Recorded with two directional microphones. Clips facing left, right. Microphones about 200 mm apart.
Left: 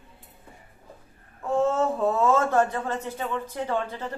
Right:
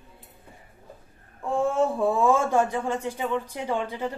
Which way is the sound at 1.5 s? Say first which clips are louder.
Even; 10° right (ahead or behind).